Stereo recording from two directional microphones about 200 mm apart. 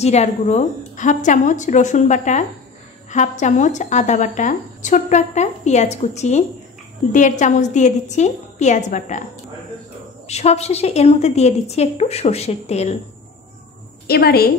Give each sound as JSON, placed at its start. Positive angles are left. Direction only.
{"t": 0.0, "sound": "a woman's voice", "side_deg": 35}
{"t": 10.2, "sound": "a woman's voice", "side_deg": 30}
{"t": 14.0, "sound": "a woman's voice", "side_deg": 50}